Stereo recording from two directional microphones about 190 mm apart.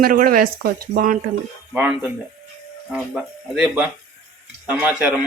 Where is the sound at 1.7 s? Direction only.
10° right (ahead or behind).